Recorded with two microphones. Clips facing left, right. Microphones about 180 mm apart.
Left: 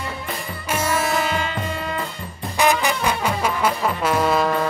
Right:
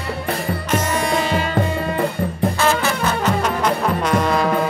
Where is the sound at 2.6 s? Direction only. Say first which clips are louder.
Left 3 dB; 15° left (ahead or behind).